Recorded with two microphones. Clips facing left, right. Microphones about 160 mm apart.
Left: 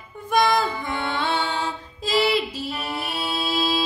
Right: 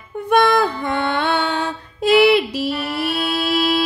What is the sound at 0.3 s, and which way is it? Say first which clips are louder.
Music: right 5 dB; 65° right (ahead or behind).